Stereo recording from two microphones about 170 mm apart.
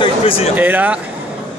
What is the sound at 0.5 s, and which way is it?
Speech, 10° right (ahead or behind).